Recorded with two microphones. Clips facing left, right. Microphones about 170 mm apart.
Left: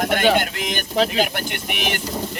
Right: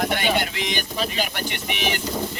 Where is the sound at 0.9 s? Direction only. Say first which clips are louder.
Left 12 dB; 80° left.